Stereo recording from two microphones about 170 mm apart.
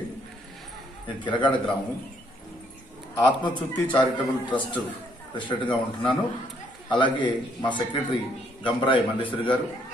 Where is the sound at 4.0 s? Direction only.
25° left (ahead or behind).